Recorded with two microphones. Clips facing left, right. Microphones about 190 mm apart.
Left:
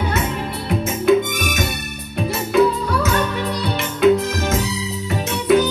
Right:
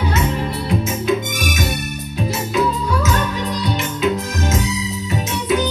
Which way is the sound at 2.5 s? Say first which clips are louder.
Left 4 dB; 55° left (ahead or behind).